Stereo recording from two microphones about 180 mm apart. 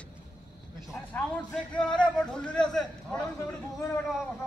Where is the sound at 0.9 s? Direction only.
10° left (ahead or behind).